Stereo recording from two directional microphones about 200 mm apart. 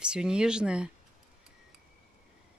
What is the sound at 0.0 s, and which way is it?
Speech, 5° right (ahead or behind).